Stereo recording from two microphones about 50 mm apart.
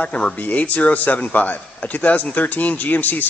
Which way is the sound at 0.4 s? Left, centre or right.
Left.